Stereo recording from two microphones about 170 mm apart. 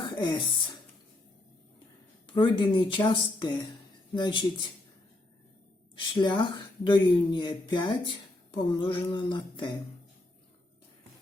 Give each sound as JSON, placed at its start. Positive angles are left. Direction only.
{"t": 0.2, "sound": "speech", "side_deg": 25}
{"t": 2.3, "sound": "speech", "side_deg": 30}
{"t": 6.0, "sound": "speech", "side_deg": 25}